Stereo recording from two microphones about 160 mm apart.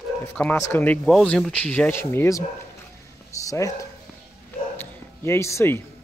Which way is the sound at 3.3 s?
20° left (ahead or behind).